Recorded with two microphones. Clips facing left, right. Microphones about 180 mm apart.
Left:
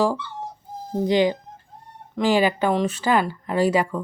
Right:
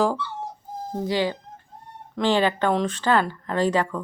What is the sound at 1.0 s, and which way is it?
Speech, 20° left (ahead or behind).